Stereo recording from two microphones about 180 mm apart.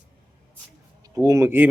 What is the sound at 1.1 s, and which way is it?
Speech, 15° right (ahead or behind).